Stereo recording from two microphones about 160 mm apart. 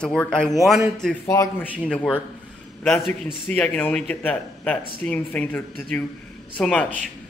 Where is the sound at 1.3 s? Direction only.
15° left (ahead or behind).